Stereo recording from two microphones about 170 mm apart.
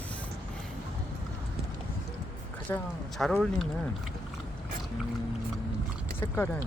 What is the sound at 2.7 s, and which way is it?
Speech, 15° left (ahead or behind).